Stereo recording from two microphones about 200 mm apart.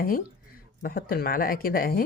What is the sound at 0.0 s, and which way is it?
Speech, 45° left (ahead or behind).